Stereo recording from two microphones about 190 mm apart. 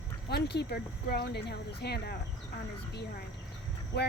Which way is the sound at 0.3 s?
60° left (ahead or behind).